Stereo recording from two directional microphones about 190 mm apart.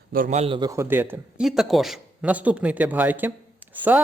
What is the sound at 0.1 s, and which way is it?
Speech, 45° right (ahead or behind).